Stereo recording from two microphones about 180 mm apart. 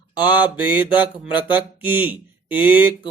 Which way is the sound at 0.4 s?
10° right (ahead or behind).